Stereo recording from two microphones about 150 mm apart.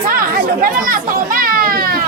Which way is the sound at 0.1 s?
75° right (ahead or behind).